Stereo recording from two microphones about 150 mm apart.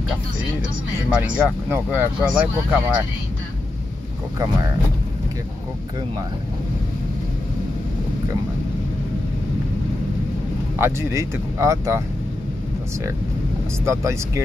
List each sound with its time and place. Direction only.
1.1 s speech: 10° right (ahead or behind)
10.8 s speech: 20° right (ahead or behind)
13.8 s speech: 20° right (ahead or behind)